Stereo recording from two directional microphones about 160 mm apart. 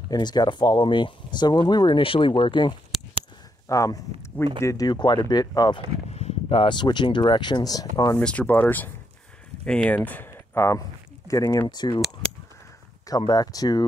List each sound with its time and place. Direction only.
0.1 s speech: 25° left (ahead or behind)
3.6 s speech: 20° left (ahead or behind)
6.0 s speech: 40° left (ahead or behind); by 8.2 s 25° left (ahead or behind)
8.2 s speech: 5° left (ahead or behind); by 12.0 s 25° left (ahead or behind)
13.2 s speech: 25° left (ahead or behind)